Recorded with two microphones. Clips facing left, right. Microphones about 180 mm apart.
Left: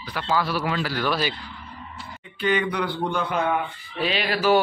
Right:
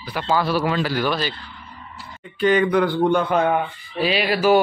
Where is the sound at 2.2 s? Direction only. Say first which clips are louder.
Right 6 dB; 45° right (ahead or behind).